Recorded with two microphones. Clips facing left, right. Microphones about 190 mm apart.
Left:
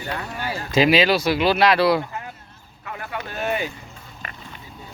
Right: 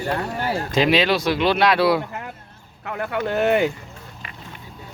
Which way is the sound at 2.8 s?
65° right (ahead or behind).